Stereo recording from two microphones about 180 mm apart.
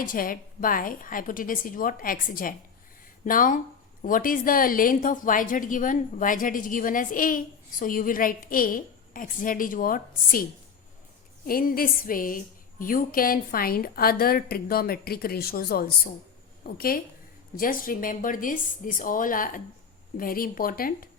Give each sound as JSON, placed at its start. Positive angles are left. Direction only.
{"t": 0.0, "sound": "a woman's voice", "side_deg": 50}
{"t": 11.4, "sound": "a woman's voice", "side_deg": 55}